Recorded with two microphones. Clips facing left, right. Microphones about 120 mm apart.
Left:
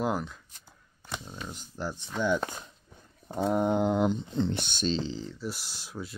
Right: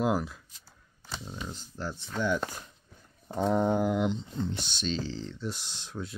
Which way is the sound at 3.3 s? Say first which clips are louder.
Even; 5° left (ahead or behind).